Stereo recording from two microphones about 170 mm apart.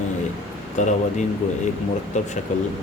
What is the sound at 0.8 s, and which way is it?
Speech, 45° left (ahead or behind).